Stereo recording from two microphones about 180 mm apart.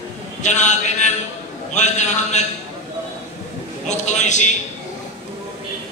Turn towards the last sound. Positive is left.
turn(degrees=40)  # may be behind; listen again after turning